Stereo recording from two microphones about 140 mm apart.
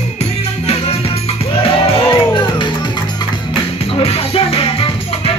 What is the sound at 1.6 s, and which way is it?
Music, 40° left (ahead or behind).